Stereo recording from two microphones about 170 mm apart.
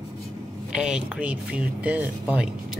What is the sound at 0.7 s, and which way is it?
Speech, 5° right (ahead or behind).